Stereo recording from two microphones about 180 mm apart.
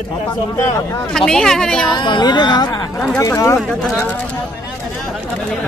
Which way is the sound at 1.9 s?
25° left (ahead or behind).